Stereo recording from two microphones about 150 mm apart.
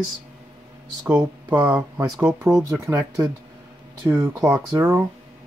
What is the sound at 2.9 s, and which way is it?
Speech, 20° right (ahead or behind).